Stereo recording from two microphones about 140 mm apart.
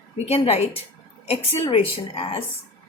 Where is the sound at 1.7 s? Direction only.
40° left (ahead or behind).